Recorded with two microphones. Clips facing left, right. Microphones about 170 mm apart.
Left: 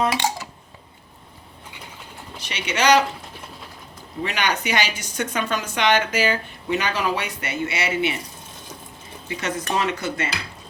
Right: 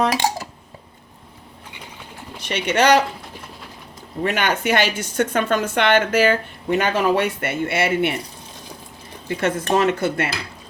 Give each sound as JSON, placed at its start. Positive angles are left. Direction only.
{"t": 0.1, "sound": "dishes", "side_deg": -40}
{"t": 2.4, "sound": "speech", "side_deg": -55}
{"t": 4.2, "sound": "speech", "side_deg": -50}
{"t": 9.3, "sound": "speech", "side_deg": -55}